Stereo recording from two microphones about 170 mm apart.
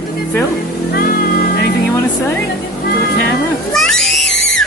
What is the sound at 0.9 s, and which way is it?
Music, 60° left (ahead or behind).